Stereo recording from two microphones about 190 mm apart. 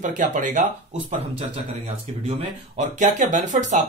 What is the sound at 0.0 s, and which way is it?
Speech, 40° right (ahead or behind).